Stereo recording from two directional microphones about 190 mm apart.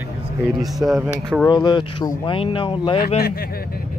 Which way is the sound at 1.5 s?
25° left (ahead or behind).